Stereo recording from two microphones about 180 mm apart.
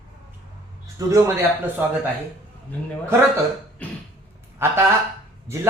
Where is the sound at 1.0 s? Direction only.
20° right (ahead or behind).